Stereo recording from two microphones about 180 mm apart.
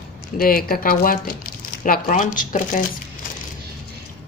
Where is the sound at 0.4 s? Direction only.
55° left (ahead or behind).